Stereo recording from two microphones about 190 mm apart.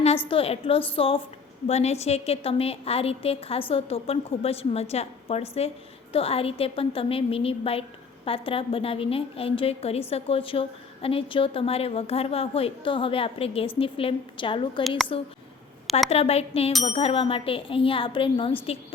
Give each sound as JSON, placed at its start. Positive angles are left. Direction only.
{"t": 0.3, "sound": "a woman's voice", "side_deg": 30}